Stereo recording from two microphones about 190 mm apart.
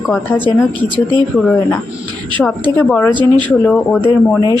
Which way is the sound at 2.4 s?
10° left (ahead or behind).